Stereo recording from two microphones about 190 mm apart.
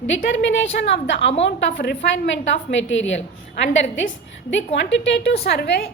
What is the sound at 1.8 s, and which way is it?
Speech, 65° left (ahead or behind).